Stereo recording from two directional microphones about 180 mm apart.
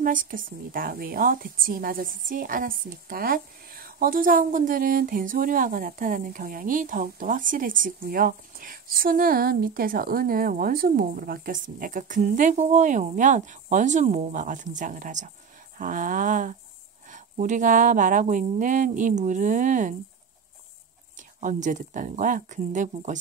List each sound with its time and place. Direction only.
0.0 s a woman's voice: 50° right (ahead or behind)
21.4 s a woman's voice: 45° right (ahead or behind)